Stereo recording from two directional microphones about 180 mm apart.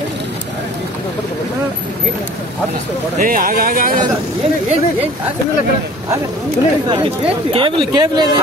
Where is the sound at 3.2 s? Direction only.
50° right (ahead or behind).